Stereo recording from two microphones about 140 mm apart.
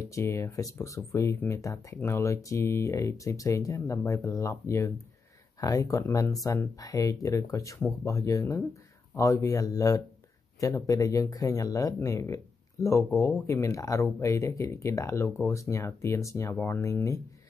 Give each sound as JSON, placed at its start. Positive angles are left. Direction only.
{"t": 0.0, "sound": "speech", "side_deg": 20}